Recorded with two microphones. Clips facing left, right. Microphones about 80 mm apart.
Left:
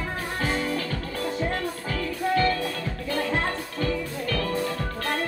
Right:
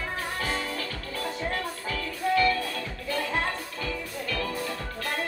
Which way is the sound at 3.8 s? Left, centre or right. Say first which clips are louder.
Left 6 dB; left.